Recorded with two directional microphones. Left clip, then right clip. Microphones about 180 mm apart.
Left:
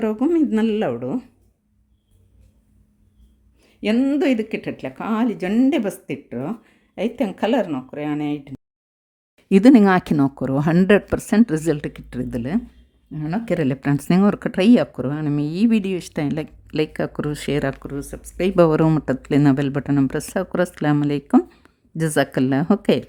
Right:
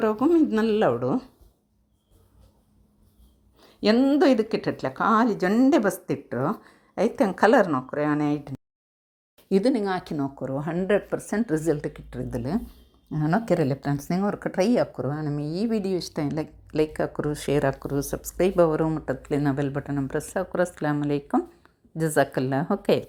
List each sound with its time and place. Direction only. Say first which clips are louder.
0.0 s speech: left 1 dB; 20° left (ahead or behind)
0.9 s a woman's voice: right 1 dB; 5° left (ahead or behind)
3.6 s a sound: right 1 dB; 5° right (ahead or behind)
3.9 s a woman's voice: left 1 dB; 10° left (ahead or behind)
9.5 s speech: left 9 dB; 75° left (ahead or behind)
10.2 s speech: left 8 dB; 45° left (ahead or behind)
13.1 s speech: right 2 dB; 5° right (ahead or behind)
14.0 s speech: left 7 dB; 45° left (ahead or behind)
15.0 s speech: left 6 dB; 30° left (ahead or behind)
15.4 s speech: left 4 dB; 45° left (ahead or behind)
17.5 s speech: even; 25° left (ahead or behind)
18.2 s speech: right 1 dB; 10° left (ahead or behind)
18.5 s speech: left 8 dB; 50° left (ahead or behind); by 23.0 s 35° left (ahead or behind)